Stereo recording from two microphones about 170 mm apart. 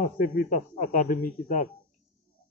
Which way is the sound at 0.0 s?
55° left (ahead or behind).